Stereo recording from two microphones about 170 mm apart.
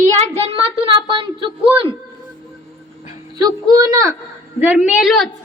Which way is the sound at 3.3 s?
20° right (ahead or behind).